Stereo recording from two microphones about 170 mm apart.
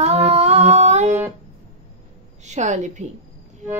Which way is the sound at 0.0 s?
40° right (ahead or behind).